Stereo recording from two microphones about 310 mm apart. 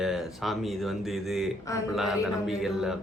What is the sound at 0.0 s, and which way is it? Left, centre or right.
Speech, centre.